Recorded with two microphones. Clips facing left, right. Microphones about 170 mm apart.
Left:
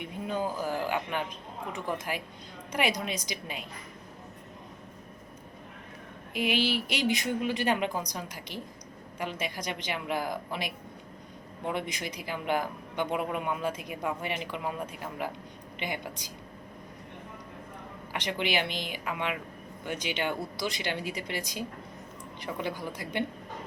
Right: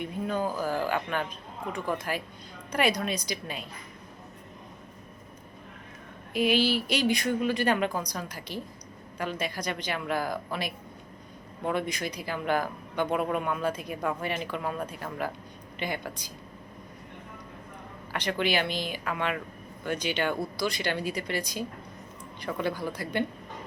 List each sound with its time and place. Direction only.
0.3 s speech: 15° left (ahead or behind)
6.3 s speech: 15° left (ahead or behind)
11.7 s speech: 20° left (ahead or behind)
18.1 s speech: 15° left (ahead or behind)